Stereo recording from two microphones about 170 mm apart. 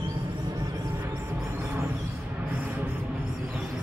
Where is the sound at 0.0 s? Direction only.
20° right (ahead or behind).